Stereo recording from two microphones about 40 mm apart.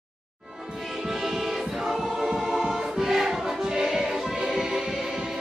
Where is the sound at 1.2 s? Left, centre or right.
Centre.